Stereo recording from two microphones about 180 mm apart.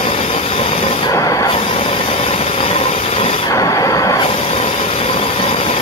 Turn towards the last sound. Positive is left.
turn(degrees=30)  # may be behind; listen again after turning